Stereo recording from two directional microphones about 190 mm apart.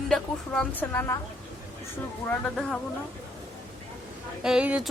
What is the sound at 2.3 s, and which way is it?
Speech, 5° left (ahead or behind).